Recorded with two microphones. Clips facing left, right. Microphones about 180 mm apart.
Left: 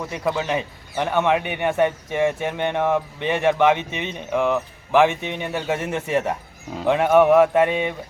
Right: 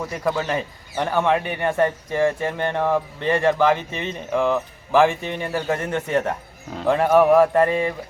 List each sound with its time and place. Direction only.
0.0 s speech: centre (ahead or behind)